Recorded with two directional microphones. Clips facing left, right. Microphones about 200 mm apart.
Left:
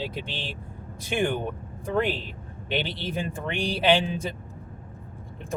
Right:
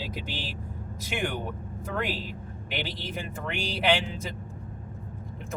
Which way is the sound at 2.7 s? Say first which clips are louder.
Left 5 dB; 30° left (ahead or behind).